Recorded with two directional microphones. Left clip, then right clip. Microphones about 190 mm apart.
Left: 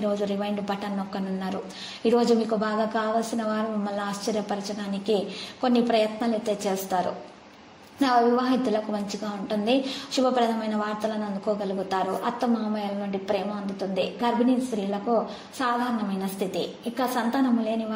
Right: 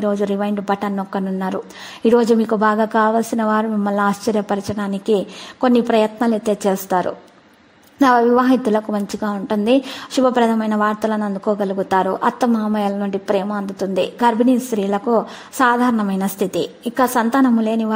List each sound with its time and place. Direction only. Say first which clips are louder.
0.0 s a woman's voice: right 7 dB; 50° right (ahead or behind)